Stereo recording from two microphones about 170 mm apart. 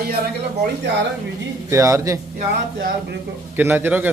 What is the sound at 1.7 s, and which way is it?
Speech, 15° right (ahead or behind).